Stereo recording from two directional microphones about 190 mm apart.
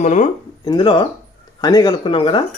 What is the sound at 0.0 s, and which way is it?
Speech, 40° left (ahead or behind).